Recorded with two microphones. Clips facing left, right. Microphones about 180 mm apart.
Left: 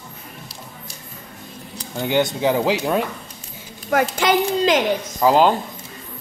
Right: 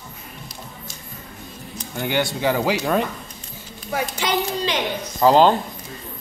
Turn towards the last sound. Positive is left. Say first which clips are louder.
# right 1 dB
turn(degrees=5)  # may be behind; listen again after turning